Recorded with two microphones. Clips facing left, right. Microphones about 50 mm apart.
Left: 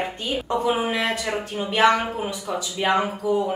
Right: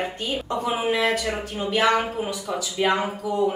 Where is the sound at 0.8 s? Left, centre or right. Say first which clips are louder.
Right 2 dB; centre.